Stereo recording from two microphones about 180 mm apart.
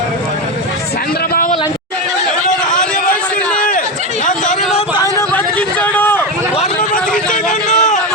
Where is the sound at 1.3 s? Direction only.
50° left (ahead or behind).